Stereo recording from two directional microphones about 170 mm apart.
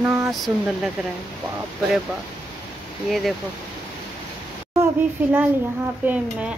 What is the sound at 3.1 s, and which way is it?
Speech, centre (ahead or behind).